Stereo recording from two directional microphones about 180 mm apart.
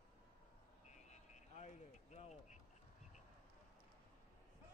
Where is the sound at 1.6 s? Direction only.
40° left (ahead or behind).